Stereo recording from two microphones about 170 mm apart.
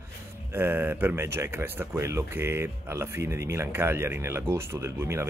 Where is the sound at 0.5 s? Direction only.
10° right (ahead or behind).